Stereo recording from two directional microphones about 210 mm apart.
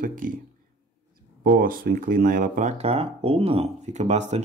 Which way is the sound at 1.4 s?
45° right (ahead or behind).